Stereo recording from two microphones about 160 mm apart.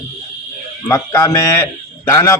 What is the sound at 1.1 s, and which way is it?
Speech, 15° left (ahead or behind).